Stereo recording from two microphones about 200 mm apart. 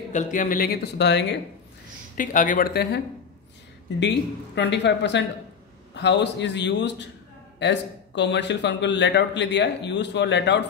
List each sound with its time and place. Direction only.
0.1 s speech: 40° left (ahead or behind); by 1.4 s 60° left (ahead or behind)
2.1 s speech: 40° left (ahead or behind)
4.6 s a man's voice: 60° left (ahead or behind)